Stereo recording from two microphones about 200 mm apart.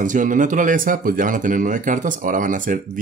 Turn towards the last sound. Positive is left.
turn(degrees=-40)  # may be behind; listen again after turning